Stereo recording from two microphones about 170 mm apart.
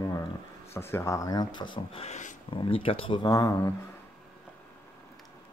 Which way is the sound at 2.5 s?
30° left (ahead or behind).